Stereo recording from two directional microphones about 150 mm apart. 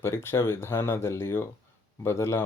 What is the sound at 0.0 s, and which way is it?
Speech, 15° left (ahead or behind).